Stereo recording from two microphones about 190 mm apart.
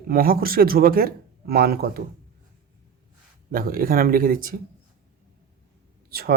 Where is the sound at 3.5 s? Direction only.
50° right (ahead or behind).